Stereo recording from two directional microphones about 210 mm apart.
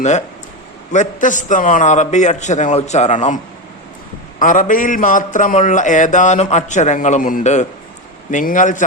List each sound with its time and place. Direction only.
0.9 s a man's voice: 35° left (ahead or behind)